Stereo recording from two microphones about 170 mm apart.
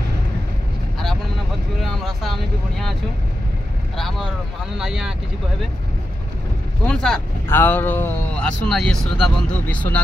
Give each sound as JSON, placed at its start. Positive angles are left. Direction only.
{"t": 1.8, "sound": "speech", "side_deg": 0}
{"t": 6.9, "sound": "speech", "side_deg": 5}